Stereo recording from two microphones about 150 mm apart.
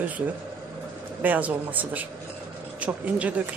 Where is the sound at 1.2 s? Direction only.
10° right (ahead or behind).